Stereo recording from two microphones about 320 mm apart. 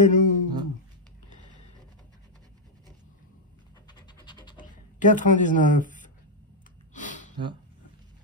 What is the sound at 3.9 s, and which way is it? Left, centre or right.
Scratch, centre.